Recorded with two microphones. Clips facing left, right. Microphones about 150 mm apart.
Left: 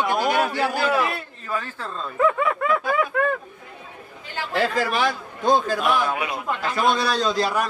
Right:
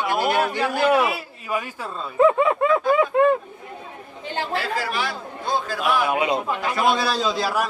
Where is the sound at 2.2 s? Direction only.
25° right (ahead or behind).